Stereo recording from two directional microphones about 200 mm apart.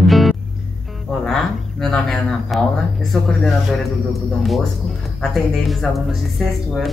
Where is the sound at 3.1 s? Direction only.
Centre (ahead or behind).